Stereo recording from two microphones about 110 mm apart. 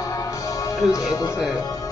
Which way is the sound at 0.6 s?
35° left (ahead or behind).